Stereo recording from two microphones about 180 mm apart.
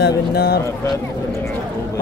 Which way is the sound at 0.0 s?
65° left (ahead or behind).